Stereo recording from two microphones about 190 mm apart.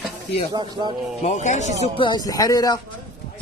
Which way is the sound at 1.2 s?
40° left (ahead or behind).